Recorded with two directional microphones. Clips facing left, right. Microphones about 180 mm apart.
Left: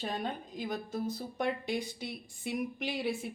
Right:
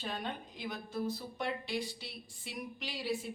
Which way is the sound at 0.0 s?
40° left (ahead or behind).